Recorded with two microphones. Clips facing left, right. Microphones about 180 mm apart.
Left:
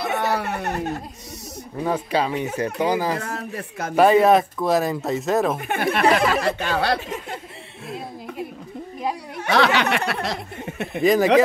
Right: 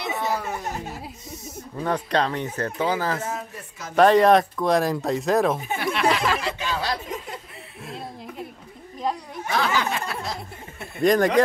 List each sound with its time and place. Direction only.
0.1 s a sound: 70° left (ahead or behind)
1.8 s speech: 5° left (ahead or behind)
3.2 s speech: 65° left (ahead or behind)
3.9 s speech: 5° left (ahead or behind)
5.6 s speech: 65° left (ahead or behind)
9.4 s a sound: 75° left (ahead or behind)
11.0 s speech: centre (ahead or behind)